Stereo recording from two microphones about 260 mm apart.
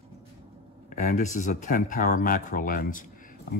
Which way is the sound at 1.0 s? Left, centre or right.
Left.